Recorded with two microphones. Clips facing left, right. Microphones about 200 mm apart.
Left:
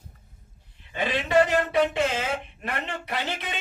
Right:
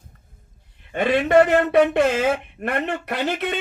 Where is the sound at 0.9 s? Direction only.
55° right (ahead or behind).